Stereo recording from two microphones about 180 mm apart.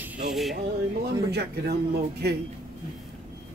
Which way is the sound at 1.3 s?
65° right (ahead or behind).